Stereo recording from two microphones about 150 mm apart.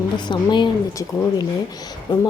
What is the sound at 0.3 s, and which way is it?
A woman's voice, 30° left (ahead or behind).